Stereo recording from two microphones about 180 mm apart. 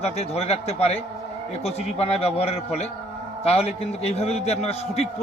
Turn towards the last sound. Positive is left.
turn(degrees=35)  # may be behind; listen again after turning